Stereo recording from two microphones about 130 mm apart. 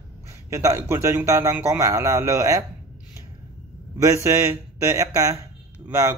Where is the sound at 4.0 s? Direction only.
20° right (ahead or behind).